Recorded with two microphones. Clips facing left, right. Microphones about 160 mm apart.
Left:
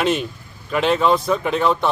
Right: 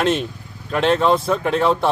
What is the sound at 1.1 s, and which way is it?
Speech, 30° right (ahead or behind).